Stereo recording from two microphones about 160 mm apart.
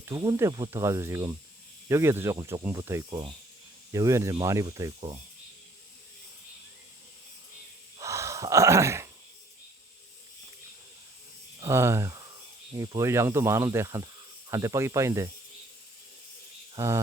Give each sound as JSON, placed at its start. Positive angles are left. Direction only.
{"t": 0.0, "sound": "speech", "side_deg": -20}
{"t": 7.9, "sound": "gasp", "side_deg": -20}
{"t": 11.6, "sound": "speech", "side_deg": -15}
{"t": 16.7, "sound": "insect", "side_deg": -20}